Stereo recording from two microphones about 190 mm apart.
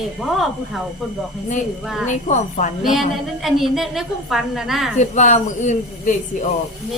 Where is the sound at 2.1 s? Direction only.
40° left (ahead or behind).